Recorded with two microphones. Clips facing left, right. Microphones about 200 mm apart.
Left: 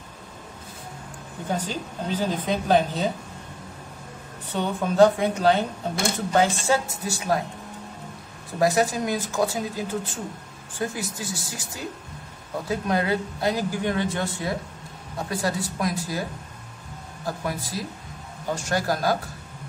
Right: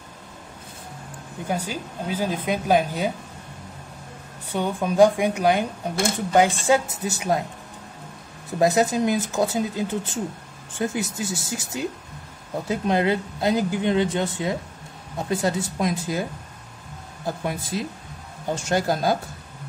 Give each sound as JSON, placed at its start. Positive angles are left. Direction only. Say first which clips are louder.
{"t": 1.5, "sound": "a woman's voice", "louder": "right 1 dB", "side_deg": -10}
{"t": 4.5, "sound": "a woman's voice", "louder": "right 1 dB", "side_deg": -10}
{"t": 8.5, "sound": "a woman's voice", "louder": "right 2 dB", "side_deg": -20}
{"t": 17.5, "sound": "a woman's voice", "louder": "right 2 dB", "side_deg": -20}